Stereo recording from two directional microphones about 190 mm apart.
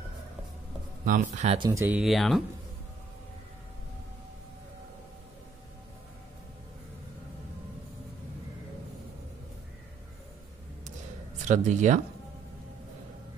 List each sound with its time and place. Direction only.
1.0 s speech: 45° right (ahead or behind)
1.7 s speech: 15° right (ahead or behind)
2.0 s speech: centre (ahead or behind)
11.4 s speech: 40° right (ahead or behind)